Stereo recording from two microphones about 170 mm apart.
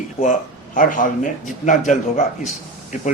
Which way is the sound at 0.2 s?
50° left (ahead or behind).